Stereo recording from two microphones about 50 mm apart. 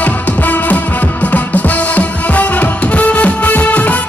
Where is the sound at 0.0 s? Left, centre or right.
Left.